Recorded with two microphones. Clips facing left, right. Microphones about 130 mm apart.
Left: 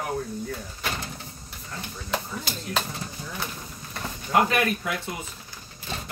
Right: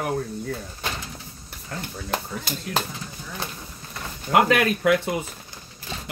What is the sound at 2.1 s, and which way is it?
Speech, 45° right (ahead or behind).